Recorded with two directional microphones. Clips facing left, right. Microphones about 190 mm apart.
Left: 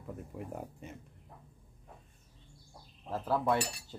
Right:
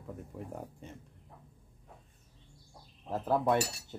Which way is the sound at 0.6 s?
5° left (ahead or behind).